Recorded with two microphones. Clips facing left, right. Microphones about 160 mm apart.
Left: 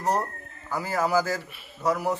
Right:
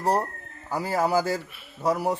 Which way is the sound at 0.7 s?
30° right (ahead or behind).